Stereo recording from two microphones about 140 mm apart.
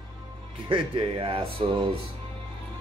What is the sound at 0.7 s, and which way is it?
Speech, 40° right (ahead or behind).